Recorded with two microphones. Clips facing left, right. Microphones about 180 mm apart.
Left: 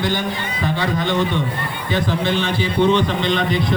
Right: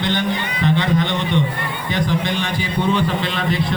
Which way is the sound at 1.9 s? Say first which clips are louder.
Left 1 dB; 15° right (ahead or behind).